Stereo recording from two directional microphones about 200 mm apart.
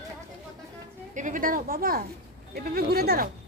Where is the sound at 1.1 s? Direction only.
40° right (ahead or behind).